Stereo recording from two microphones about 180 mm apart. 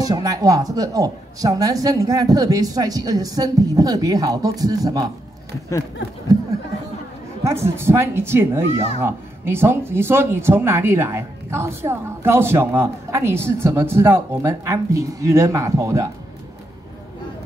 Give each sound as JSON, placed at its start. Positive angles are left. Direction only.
{"t": 0.0, "sound": "a woman's voice", "side_deg": -20}
{"t": 7.4, "sound": "speech", "side_deg": -15}